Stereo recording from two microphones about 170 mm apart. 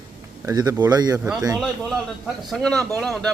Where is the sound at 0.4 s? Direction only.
20° right (ahead or behind).